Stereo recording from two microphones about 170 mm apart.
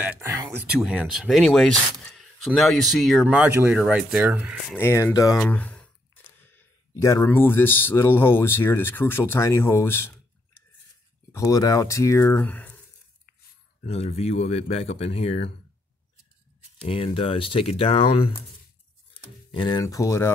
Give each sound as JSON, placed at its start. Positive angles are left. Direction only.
{"t": 0.0, "sound": "speech", "side_deg": -10}
{"t": 0.3, "sound": "a sound", "side_deg": -15}
{"t": 0.7, "sound": "speech", "side_deg": -5}
{"t": 4.7, "sound": "speech", "side_deg": 15}
{"t": 5.4, "sound": "speech", "side_deg": 10}
{"t": 11.3, "sound": "speech", "side_deg": 20}
{"t": 13.8, "sound": "speech", "side_deg": 40}
{"t": 16.8, "sound": "speech", "side_deg": 35}